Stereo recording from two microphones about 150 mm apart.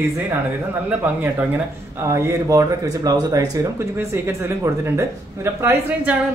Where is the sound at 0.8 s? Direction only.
10° right (ahead or behind).